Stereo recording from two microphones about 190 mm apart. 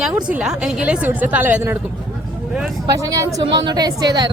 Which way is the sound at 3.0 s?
15° right (ahead or behind).